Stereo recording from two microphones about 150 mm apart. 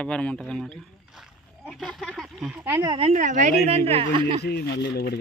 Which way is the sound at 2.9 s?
45° right (ahead or behind).